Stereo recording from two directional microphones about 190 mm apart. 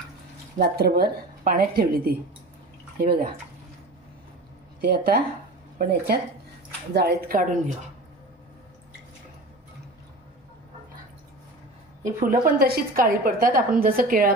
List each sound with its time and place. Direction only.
0.6 s a woman's voice: 55° right (ahead or behind)
4.8 s a woman's voice: 55° right (ahead or behind)
12.0 s a woman's voice: 45° right (ahead or behind)